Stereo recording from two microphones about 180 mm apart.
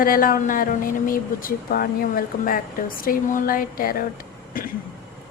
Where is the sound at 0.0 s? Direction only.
50° left (ahead or behind).